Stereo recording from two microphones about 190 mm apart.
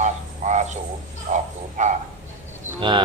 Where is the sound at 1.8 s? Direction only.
40° right (ahead or behind).